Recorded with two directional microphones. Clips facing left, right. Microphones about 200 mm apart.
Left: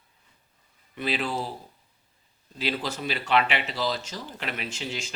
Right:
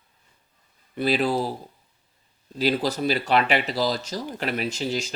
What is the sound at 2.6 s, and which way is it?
Speech, 40° right (ahead or behind).